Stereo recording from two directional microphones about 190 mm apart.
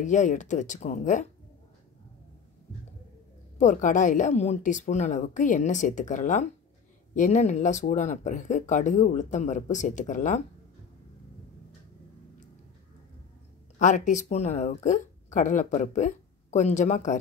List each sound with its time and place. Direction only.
0.0 s speech: 40° left (ahead or behind)
3.5 s speech: 40° left (ahead or behind)
13.7 s speech: 40° left (ahead or behind)